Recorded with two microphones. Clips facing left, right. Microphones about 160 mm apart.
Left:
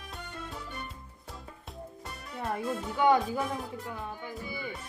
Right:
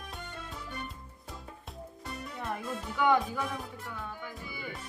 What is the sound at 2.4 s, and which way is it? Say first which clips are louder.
Music: left 5 dB; 35° left (ahead or behind).